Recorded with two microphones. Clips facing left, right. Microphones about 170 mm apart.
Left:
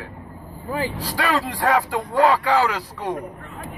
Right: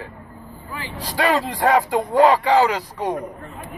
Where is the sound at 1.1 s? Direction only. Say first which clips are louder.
Right 6 dB; 20° right (ahead or behind).